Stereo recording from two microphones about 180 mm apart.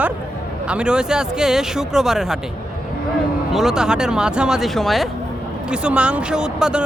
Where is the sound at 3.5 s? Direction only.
5° right (ahead or behind).